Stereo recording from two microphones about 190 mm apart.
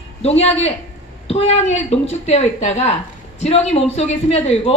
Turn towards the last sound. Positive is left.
turn(degrees=35)  # may be behind; listen again after turning